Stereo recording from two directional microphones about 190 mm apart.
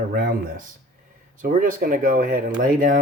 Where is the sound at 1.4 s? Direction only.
45° right (ahead or behind).